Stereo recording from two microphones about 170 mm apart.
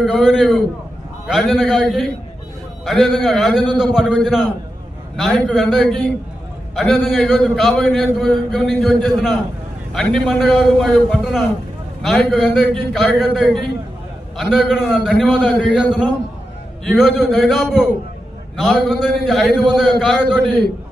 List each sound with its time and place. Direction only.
0.0 s a man's voice: centre (ahead or behind)